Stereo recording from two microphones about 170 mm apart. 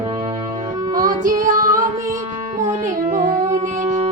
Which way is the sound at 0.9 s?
20° right (ahead or behind).